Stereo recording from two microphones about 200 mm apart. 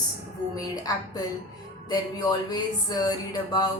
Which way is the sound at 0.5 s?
20° left (ahead or behind).